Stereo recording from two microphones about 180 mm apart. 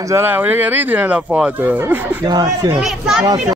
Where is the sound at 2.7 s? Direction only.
Centre (ahead or behind).